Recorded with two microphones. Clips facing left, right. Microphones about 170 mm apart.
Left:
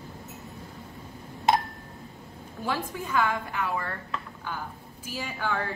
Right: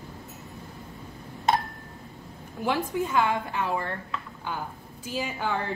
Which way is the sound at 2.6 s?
20° right (ahead or behind).